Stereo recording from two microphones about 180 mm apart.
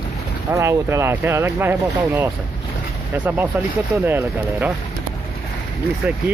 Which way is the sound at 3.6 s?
10° right (ahead or behind).